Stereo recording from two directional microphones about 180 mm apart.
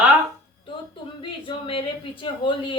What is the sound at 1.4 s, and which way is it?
Speech, 30° left (ahead or behind).